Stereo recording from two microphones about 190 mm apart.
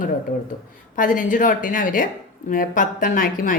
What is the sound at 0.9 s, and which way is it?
Speech, 45° left (ahead or behind).